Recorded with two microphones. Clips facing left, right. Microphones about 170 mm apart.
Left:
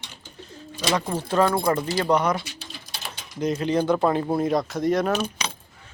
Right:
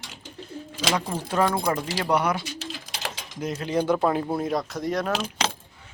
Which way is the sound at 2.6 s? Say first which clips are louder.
Right 4 dB; 90° right.